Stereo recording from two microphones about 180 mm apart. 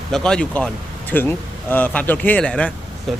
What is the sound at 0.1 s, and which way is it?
Speech, 5° left (ahead or behind).